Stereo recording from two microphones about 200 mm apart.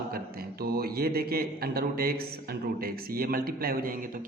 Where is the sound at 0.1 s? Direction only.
50° right (ahead or behind).